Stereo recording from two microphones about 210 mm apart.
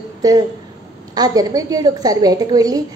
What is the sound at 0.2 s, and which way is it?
A woman's voice, 15° right (ahead or behind).